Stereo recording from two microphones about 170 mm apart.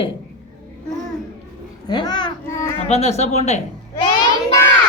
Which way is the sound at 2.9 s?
40° left (ahead or behind).